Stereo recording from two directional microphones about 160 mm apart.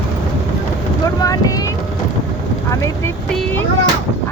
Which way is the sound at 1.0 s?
20° left (ahead or behind).